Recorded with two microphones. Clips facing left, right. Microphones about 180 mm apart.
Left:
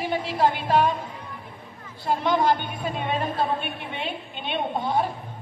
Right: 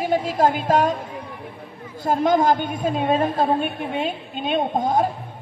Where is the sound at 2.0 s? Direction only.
45° right (ahead or behind).